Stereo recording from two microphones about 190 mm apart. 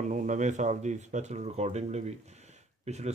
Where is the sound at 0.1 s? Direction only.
40° right (ahead or behind).